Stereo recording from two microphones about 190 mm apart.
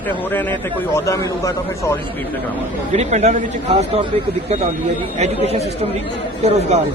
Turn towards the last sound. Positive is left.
turn(degrees=-35)  # may be behind; listen again after turning